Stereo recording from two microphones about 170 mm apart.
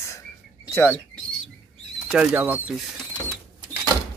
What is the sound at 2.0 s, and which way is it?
Speech, 5° right (ahead or behind).